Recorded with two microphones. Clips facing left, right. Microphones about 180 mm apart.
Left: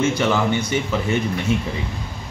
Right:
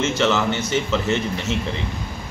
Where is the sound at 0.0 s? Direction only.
10° left (ahead or behind).